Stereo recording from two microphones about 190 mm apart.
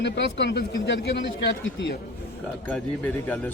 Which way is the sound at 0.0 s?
70° left (ahead or behind).